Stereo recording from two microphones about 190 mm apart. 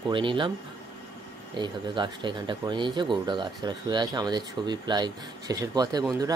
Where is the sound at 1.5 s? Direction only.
25° right (ahead or behind).